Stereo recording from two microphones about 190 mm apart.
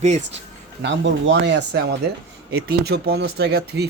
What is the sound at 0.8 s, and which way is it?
Speech, 70° right (ahead or behind).